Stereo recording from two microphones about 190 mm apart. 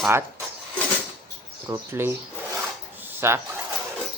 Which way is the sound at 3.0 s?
10° right (ahead or behind).